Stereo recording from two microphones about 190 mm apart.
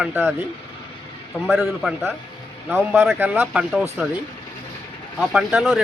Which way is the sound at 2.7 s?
10° right (ahead or behind).